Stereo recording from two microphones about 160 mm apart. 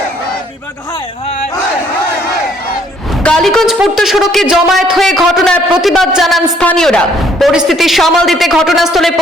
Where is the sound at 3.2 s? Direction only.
5° left (ahead or behind).